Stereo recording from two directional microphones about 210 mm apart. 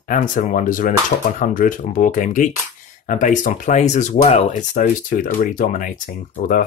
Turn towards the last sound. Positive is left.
turn(degrees=40)  # may be behind; listen again after turning